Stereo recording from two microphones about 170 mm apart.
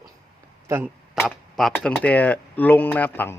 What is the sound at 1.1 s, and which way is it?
Tick-tock, centre (ahead or behind).